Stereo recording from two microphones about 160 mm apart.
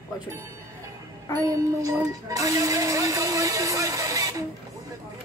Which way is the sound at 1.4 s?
20° right (ahead or behind).